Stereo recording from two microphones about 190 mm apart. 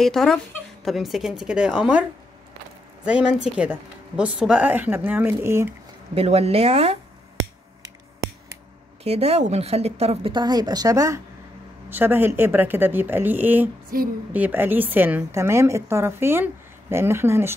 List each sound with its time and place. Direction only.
0.0 s a woman's voice: centre (ahead or behind)
3.1 s speech: 5° right (ahead or behind)
6.1 s a woman's voice: 30° right (ahead or behind)
9.0 s a woman's voice: 35° right (ahead or behind); by 13.7 s 10° right (ahead or behind)
13.9 s a woman's voice: 50° right (ahead or behind)
14.3 s speech: 10° right (ahead or behind)